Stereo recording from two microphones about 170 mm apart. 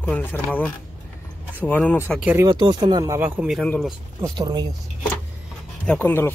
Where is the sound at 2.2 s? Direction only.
10° right (ahead or behind).